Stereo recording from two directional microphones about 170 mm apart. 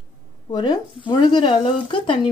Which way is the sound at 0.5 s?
25° left (ahead or behind).